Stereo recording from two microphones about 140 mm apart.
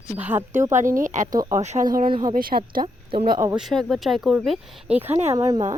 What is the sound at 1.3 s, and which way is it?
Speech, 25° right (ahead or behind).